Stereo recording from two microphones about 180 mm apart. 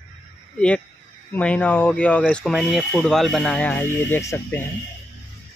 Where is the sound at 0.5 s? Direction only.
5° left (ahead or behind).